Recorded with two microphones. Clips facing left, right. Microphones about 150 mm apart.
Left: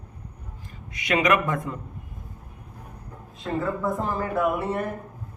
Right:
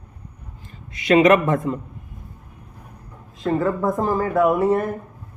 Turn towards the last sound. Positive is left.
turn(degrees=-40)  # may be behind; listen again after turning